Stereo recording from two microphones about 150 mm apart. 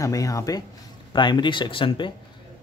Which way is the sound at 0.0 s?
20° left (ahead or behind).